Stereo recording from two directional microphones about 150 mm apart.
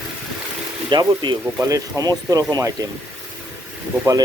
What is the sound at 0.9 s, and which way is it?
Speech, 30° right (ahead or behind).